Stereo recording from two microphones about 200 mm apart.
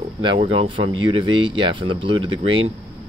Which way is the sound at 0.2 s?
25° right (ahead or behind).